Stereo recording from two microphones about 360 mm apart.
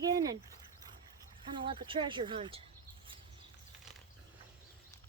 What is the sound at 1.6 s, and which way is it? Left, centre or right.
Speech, centre.